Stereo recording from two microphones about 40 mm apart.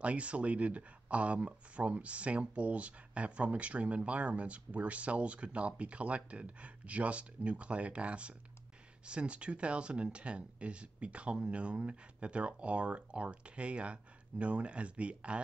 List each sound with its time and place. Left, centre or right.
0.0 s speech: right